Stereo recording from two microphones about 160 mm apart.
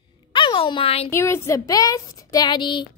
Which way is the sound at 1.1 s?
15° left (ahead or behind).